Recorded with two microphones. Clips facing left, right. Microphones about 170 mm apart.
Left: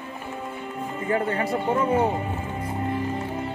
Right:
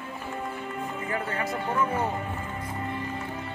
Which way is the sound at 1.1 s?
30° left (ahead or behind).